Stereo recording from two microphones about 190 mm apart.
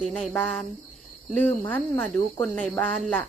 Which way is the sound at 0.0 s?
Centre (ahead or behind).